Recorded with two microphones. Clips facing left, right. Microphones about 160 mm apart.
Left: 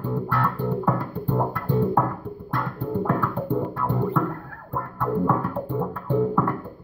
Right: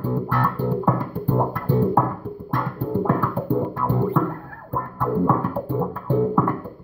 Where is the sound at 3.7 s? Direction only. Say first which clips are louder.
Right 3 dB; 20° right (ahead or behind).